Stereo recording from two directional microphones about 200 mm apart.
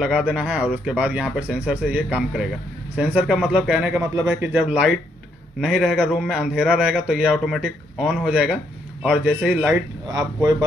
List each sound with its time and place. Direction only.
0.0 s a man's voice: 5° right (ahead or behind)
10.0 s speech: 15° right (ahead or behind)